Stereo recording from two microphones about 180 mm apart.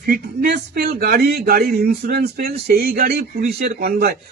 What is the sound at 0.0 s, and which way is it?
Speech, 60° right (ahead or behind).